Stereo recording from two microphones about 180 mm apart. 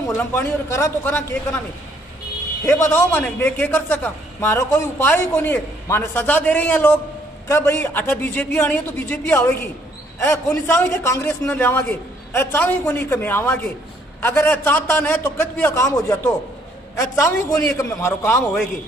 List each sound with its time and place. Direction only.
0.0 s a man's voice: 15° left (ahead or behind)
2.6 s a man's voice: 15° left (ahead or behind)